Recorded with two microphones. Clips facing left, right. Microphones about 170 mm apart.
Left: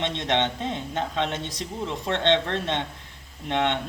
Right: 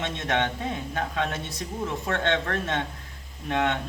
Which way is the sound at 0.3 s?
25° left (ahead or behind).